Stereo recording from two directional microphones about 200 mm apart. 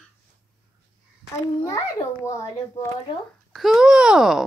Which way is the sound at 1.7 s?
15° left (ahead or behind).